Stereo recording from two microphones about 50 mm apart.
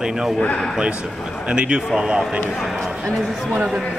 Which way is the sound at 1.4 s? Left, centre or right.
Right.